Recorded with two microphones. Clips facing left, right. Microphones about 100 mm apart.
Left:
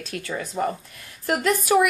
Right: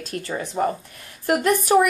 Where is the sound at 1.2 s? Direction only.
50° right (ahead or behind).